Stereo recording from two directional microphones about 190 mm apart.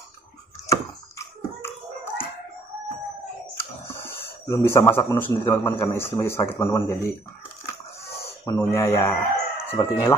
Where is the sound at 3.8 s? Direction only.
10° left (ahead or behind).